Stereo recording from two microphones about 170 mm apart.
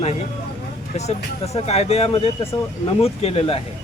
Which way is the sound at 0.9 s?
40° left (ahead or behind).